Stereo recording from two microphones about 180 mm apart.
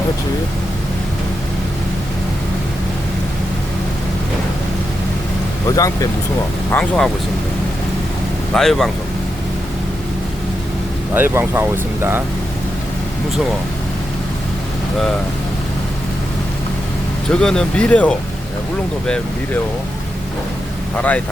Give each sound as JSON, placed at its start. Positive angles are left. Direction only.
{"t": 5.6, "sound": "speech", "side_deg": 20}
{"t": 6.7, "sound": "speech", "side_deg": 5}
{"t": 8.5, "sound": "speech", "side_deg": 0}
{"t": 11.1, "sound": "speech", "side_deg": -10}
{"t": 17.2, "sound": "speech", "side_deg": 5}
{"t": 20.9, "sound": "speech", "side_deg": 10}